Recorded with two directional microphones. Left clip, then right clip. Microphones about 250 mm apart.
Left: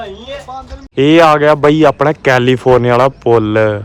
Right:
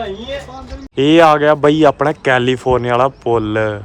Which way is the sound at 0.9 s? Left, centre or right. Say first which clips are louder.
Left 2 dB; centre.